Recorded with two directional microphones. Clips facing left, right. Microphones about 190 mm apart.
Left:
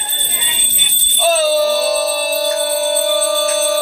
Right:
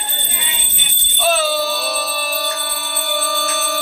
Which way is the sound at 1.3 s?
40° left (ahead or behind).